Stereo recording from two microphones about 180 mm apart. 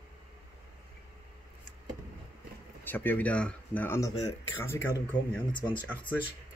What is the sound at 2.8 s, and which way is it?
Speech, 10° left (ahead or behind).